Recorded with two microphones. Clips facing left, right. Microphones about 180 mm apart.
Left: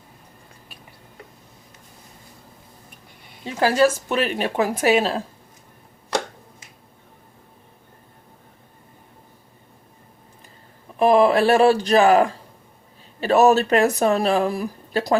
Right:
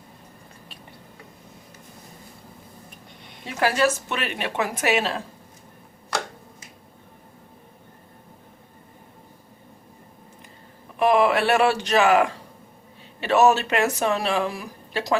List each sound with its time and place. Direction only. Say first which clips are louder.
3.4 s speech: left 4 dB; 30° left (ahead or behind)
11.0 s speech: left 4 dB; 35° left (ahead or behind)